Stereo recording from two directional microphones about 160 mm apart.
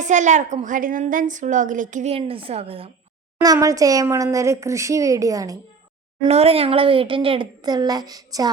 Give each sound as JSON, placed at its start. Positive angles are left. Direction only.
{"t": 0.0, "sound": "a woman's voice", "side_deg": -50}
{"t": 2.1, "sound": "a child's voice", "side_deg": -35}
{"t": 3.4, "sound": "speech", "side_deg": -20}
{"t": 6.2, "sound": "a child's voice", "side_deg": -40}